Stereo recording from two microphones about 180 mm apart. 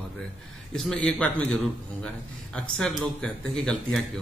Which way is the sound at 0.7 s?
5° left (ahead or behind).